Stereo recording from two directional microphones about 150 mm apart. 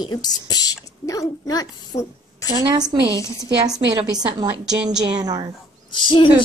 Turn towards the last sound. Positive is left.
turn(degrees=30)  # may be behind; listen again after turning